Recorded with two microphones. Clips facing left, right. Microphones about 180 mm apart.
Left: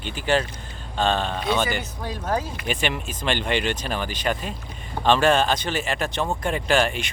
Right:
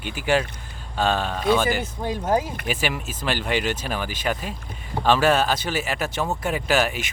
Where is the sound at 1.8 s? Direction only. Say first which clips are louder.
Right 4 dB; 20° right (ahead or behind).